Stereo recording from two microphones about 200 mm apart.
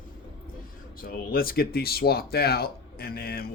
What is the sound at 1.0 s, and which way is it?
Speech, 50° left (ahead or behind).